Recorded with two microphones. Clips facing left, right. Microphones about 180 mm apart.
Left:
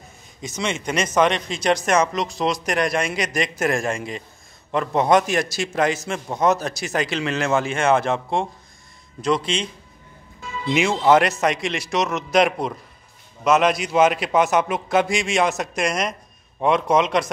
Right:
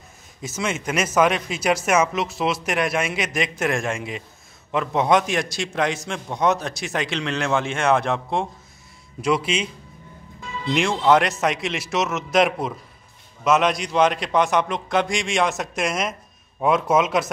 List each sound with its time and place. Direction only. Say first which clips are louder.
0.4 s a man's voice: even; 5° right (ahead or behind)
10.7 s a man's voice: left 1 dB; 5° left (ahead or behind)